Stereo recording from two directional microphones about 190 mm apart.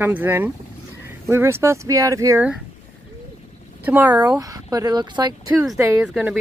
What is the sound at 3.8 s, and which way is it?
Speech, 10° right (ahead or behind).